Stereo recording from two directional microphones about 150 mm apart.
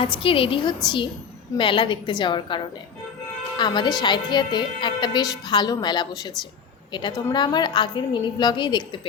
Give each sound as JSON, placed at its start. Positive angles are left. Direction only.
{"t": 0.0, "sound": "a woman's voice", "side_deg": 35}
{"t": 3.6, "sound": "a woman's voice", "side_deg": 30}